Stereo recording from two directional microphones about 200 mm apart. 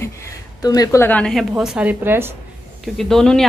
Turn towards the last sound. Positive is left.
turn(degrees=5)  # may be behind; listen again after turning